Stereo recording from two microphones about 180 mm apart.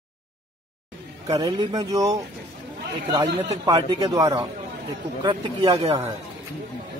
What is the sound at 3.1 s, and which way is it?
A man's voice, 20° right (ahead or behind).